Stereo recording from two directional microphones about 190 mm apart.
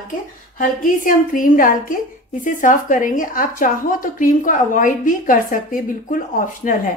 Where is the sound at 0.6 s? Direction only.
45° left (ahead or behind).